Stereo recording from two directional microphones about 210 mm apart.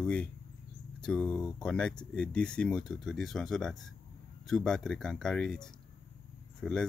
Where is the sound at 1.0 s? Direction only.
5° left (ahead or behind).